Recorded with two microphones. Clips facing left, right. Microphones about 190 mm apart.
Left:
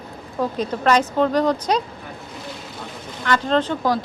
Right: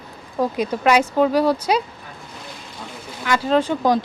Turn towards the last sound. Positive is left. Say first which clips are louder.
# right 2 dB
turn(degrees=-15)  # may be behind; listen again after turning